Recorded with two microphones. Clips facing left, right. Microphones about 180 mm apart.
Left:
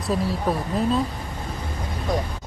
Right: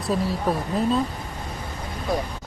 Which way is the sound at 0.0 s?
Centre (ahead or behind).